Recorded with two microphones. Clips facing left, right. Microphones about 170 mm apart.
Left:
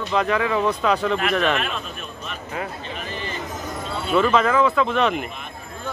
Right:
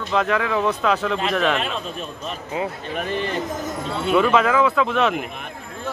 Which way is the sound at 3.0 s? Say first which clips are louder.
Right 9 dB; 60° right (ahead or behind).